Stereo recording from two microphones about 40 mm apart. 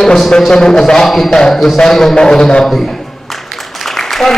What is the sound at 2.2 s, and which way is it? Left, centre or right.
Speech, left.